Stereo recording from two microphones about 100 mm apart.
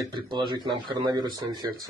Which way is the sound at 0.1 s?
50° right (ahead or behind).